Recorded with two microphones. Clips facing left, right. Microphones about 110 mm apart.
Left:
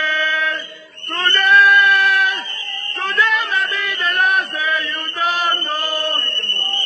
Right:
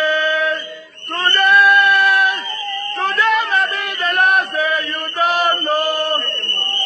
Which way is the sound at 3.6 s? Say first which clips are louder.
Right 2 dB; 50° right (ahead or behind).